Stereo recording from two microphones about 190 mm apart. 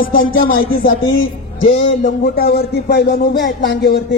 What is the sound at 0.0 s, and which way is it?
Speech, 50° left (ahead or behind).